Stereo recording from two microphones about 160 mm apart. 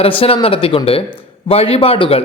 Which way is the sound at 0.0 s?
35° left (ahead or behind).